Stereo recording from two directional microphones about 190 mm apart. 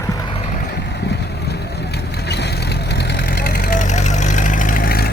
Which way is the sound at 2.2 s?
60° left (ahead or behind).